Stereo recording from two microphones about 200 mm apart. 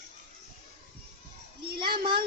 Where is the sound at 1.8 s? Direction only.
25° right (ahead or behind).